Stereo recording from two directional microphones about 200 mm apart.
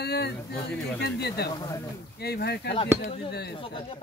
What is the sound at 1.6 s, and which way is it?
Speech, 20° left (ahead or behind).